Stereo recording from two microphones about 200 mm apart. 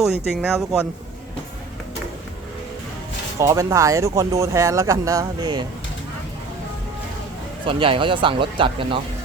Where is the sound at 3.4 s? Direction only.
15° right (ahead or behind).